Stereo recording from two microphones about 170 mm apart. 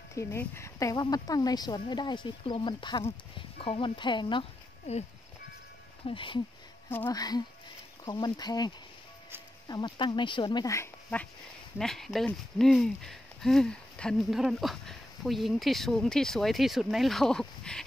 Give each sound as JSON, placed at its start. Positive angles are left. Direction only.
{"t": 0.1, "sound": "speech", "side_deg": 15}
{"t": 6.0, "sound": "speech", "side_deg": 30}
{"t": 11.8, "sound": "speech", "side_deg": 0}